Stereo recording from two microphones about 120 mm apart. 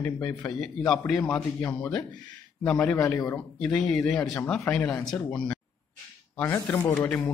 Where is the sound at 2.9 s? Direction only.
25° left (ahead or behind).